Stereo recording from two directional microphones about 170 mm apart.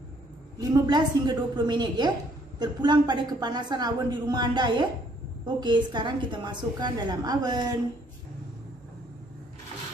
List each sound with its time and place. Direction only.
0.6 s a woman's voice: 25° right (ahead or behind)